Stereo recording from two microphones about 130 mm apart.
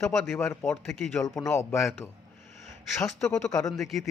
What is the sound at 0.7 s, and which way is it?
Speech, 5° left (ahead or behind).